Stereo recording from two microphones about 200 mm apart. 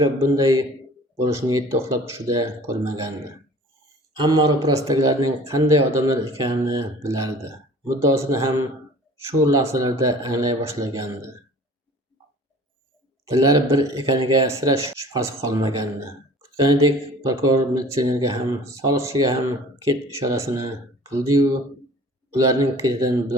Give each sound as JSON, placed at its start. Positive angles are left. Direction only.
{"t": 0.0, "sound": "speech", "side_deg": -15}
{"t": 4.1, "sound": "speech", "side_deg": -20}
{"t": 13.2, "sound": "speech", "side_deg": -15}